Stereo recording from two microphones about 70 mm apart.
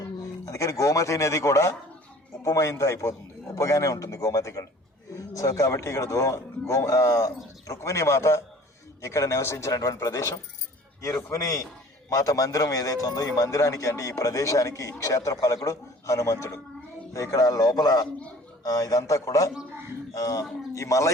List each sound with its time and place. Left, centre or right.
0.2 s speech: left
17.2 s a man's voice: left